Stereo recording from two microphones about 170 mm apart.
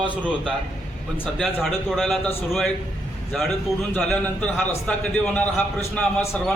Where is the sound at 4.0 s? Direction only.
5° left (ahead or behind).